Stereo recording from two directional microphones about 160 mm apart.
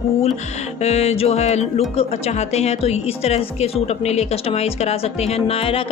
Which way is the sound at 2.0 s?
40° left (ahead or behind).